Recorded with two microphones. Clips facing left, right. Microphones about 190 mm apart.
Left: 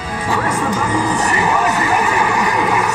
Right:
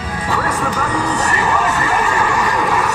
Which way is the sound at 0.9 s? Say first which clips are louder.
Left 1 dB; 15° left (ahead or behind).